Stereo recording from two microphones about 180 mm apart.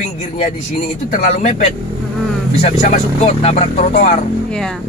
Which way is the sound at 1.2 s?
40° left (ahead or behind).